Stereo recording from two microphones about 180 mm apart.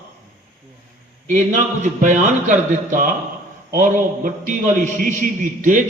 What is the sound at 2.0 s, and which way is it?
A man's voice, 45° right (ahead or behind).